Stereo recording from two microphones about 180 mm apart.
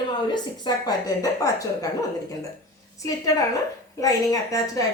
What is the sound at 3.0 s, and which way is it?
A woman's voice, 20° left (ahead or behind).